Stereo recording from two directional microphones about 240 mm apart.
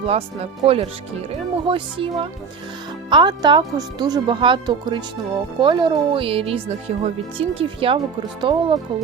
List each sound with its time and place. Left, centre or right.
0.0 s speech: right